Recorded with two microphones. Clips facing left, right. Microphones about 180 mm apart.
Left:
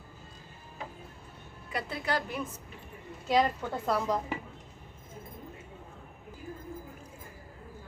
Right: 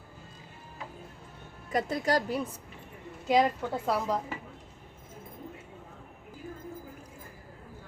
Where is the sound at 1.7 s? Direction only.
40° right (ahead or behind).